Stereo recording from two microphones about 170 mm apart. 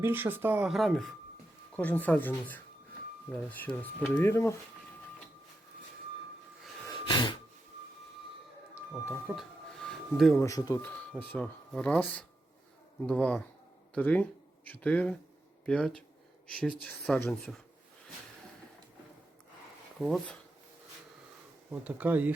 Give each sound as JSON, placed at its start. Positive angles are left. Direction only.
{"t": 0.0, "sound": "speech", "side_deg": -10}
{"t": 3.6, "sound": "speech", "side_deg": 10}
{"t": 6.8, "sound": "sneeze", "side_deg": 25}
{"t": 8.7, "sound": "a sound", "side_deg": -5}
{"t": 10.3, "sound": "speech", "side_deg": 20}
{"t": 10.8, "sound": "speech", "side_deg": 10}
{"t": 20.0, "sound": "speech", "side_deg": 0}
{"t": 21.7, "sound": "speech", "side_deg": -10}